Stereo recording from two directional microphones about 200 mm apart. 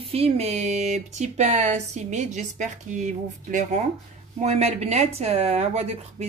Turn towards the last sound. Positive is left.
turn(degrees=-30)  # may be behind; listen again after turning